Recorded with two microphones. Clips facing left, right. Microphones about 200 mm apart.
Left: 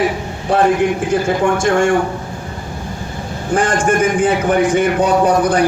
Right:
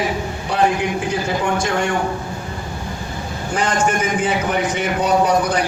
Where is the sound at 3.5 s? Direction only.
50° left (ahead or behind).